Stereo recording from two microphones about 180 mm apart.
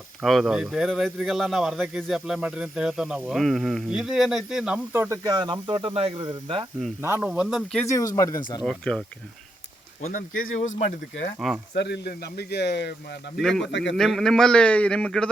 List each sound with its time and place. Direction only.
0.2 s speech: centre (ahead or behind); by 6.7 s 30° right (ahead or behind)
7.0 s speech: 10° right (ahead or behind)
7.9 s speech: 15° left (ahead or behind)
8.6 s speech: 5° left (ahead or behind)
10.0 s speech: 50° left (ahead or behind)
11.3 s speech: 5° right (ahead or behind)
11.7 s speech: 65° left (ahead or behind)
13.4 s speech: centre (ahead or behind)
13.7 s a man's voice: 85° left
13.9 s speech: centre (ahead or behind)